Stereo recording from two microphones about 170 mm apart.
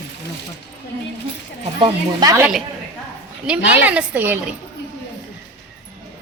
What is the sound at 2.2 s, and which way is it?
Speech, 20° right (ahead or behind).